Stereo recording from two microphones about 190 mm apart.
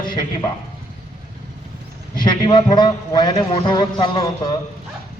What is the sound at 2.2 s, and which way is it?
A man's voice, 25° left (ahead or behind).